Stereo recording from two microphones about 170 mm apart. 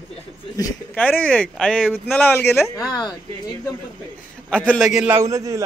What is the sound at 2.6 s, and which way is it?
Speech, 20° left (ahead or behind).